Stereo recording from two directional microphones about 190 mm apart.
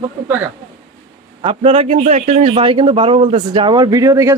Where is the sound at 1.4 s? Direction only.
30° right (ahead or behind).